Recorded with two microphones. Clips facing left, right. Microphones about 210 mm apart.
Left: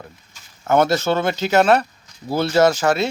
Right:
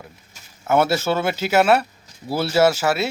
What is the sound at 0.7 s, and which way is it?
Speech, 5° right (ahead or behind).